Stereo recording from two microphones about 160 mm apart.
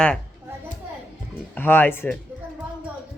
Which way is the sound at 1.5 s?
15° left (ahead or behind).